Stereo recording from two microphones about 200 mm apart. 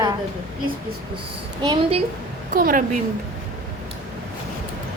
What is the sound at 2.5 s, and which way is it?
Speech, 45° right (ahead or behind).